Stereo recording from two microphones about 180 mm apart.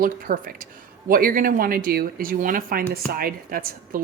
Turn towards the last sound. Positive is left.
turn(degrees=-55)  # may be behind; listen again after turning